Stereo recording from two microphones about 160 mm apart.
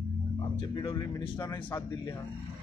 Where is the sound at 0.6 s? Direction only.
30° left (ahead or behind).